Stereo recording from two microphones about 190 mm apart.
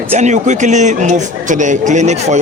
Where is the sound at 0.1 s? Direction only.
40° right (ahead or behind).